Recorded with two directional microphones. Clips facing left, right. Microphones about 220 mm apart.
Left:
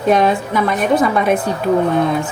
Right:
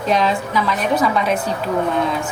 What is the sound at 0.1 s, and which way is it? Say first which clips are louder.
A woman's voice: left 4 dB; 55° left (ahead or behind).